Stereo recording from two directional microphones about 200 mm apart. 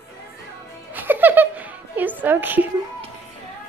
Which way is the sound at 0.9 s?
10° right (ahead or behind).